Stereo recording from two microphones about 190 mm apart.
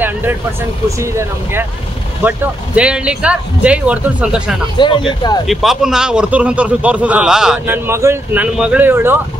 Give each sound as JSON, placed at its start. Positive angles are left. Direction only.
{"t": 0.0, "sound": "vehicle", "side_deg": -10}
{"t": 0.8, "sound": "a man's voice", "side_deg": -15}
{"t": 4.7, "sound": "speech", "side_deg": 25}
{"t": 5.5, "sound": "a man's voice", "side_deg": 0}